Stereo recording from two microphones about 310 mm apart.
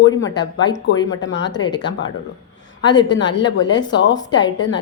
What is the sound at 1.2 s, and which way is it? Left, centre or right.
Speech, left.